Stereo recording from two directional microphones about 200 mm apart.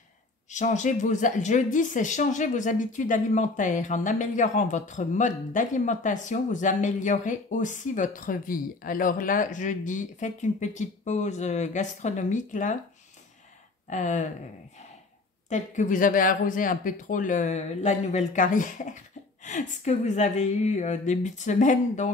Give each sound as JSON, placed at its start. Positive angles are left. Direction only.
{"t": 0.5, "sound": "speech", "side_deg": 35}
{"t": 13.8, "sound": "speech", "side_deg": 40}
{"t": 15.5, "sound": "speech", "side_deg": 40}